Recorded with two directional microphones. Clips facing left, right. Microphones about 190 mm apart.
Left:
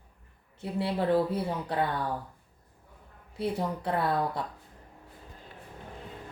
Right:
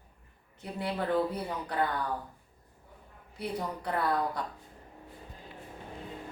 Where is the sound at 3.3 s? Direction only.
25° left (ahead or behind).